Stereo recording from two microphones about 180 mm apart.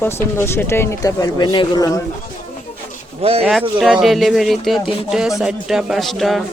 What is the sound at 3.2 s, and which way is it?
Speech, 35° right (ahead or behind).